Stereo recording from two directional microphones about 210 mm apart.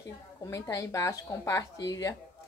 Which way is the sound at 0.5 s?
15° left (ahead or behind).